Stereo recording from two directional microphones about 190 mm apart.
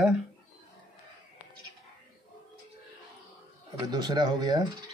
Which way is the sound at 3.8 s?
20° right (ahead or behind).